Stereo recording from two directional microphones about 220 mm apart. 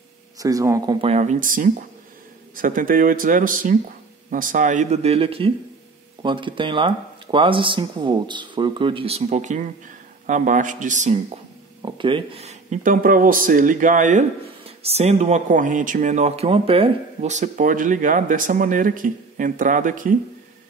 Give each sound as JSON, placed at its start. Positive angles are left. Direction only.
{"t": 0.4, "sound": "speech", "side_deg": -15}
{"t": 1.0, "sound": "speech", "side_deg": -30}
{"t": 11.8, "sound": "speech", "side_deg": -20}